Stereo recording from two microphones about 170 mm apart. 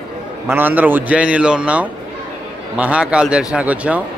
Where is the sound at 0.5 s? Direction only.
10° right (ahead or behind).